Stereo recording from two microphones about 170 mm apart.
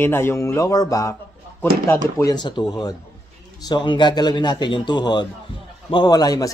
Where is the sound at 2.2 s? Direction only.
25° left (ahead or behind).